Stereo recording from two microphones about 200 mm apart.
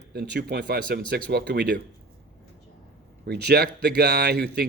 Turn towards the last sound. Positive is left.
turn(degrees=-55)  # may be behind; listen again after turning